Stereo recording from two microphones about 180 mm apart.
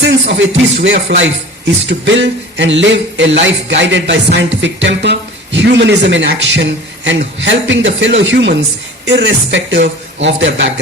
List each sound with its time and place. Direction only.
0.0 s speech: 90° right